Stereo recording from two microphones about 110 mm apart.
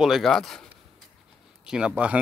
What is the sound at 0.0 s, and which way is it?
Speech, centre (ahead or behind).